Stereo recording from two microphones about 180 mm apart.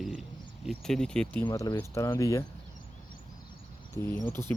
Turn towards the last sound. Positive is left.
turn(degrees=10)  # may be behind; listen again after turning